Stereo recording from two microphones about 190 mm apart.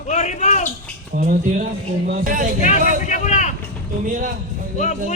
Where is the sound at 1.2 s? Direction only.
45° right (ahead or behind).